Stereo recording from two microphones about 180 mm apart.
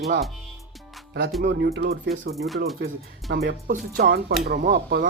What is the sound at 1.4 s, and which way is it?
Speech, 65° right (ahead or behind).